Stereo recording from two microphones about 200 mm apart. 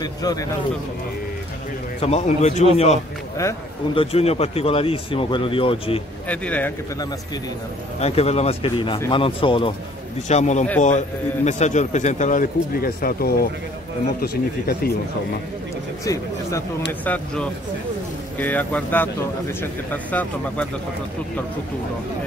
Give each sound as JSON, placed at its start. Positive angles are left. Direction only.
{"t": 0.0, "sound": "speech", "side_deg": 20}
{"t": 2.0, "sound": "a man's voice", "side_deg": 30}
{"t": 3.9, "sound": "speech", "side_deg": 30}
{"t": 6.2, "sound": "speech", "side_deg": 5}
{"t": 8.0, "sound": "a man's voice", "side_deg": 30}
{"t": 10.2, "sound": "a man's voice", "side_deg": 35}
{"t": 16.1, "sound": "speech", "side_deg": 15}